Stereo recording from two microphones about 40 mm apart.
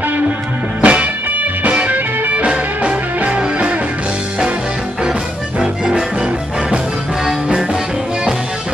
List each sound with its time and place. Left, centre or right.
0.8 s music: right
5.6 s music: centre